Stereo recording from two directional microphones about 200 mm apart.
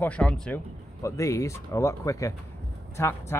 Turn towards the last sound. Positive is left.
turn(degrees=10)  # may be behind; listen again after turning